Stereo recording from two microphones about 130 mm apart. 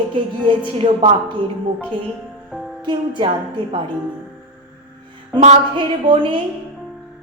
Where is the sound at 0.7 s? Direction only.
40° right (ahead or behind).